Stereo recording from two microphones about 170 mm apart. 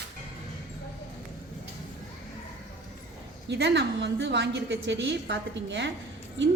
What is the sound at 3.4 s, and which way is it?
A woman's voice, 90° right.